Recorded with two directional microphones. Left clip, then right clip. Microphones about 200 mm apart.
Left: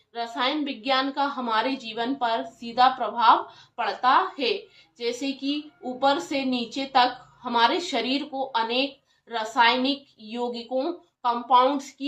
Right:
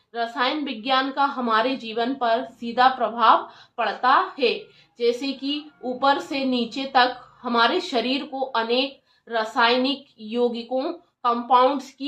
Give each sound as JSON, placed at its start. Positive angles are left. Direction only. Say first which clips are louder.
{"t": 0.1, "sound": "a woman's voice", "louder": "right 3 dB", "side_deg": -35}